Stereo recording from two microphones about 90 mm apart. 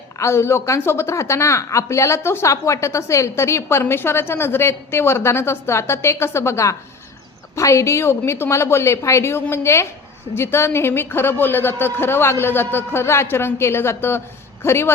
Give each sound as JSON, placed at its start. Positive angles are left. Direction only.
{"t": 0.2, "sound": "a woman's voice", "side_deg": 30}